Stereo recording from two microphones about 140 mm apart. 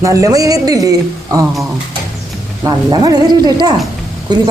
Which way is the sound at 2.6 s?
25° right (ahead or behind).